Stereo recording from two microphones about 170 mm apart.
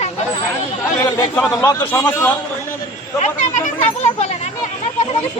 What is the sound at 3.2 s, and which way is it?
Speech, 40° left (ahead or behind).